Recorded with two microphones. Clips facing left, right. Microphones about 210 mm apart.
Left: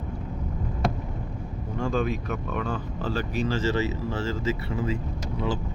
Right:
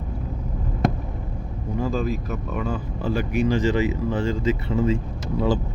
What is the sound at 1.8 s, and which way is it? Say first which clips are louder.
Speech: right 1 dB; centre (ahead or behind).